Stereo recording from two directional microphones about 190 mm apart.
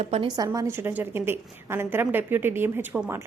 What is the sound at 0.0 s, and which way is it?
Speech, 30° right (ahead or behind).